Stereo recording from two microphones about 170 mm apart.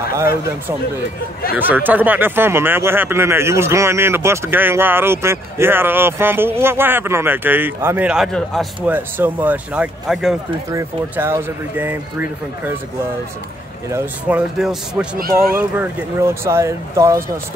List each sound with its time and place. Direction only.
1.6 s speech: 10° right (ahead or behind)
8.8 s speech: 10° right (ahead or behind)
10.7 s speech: 15° right (ahead or behind)
13.9 s speech: 10° right (ahead or behind)